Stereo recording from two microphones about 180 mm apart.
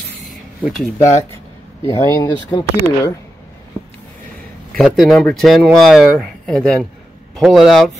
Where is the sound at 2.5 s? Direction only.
20° left (ahead or behind).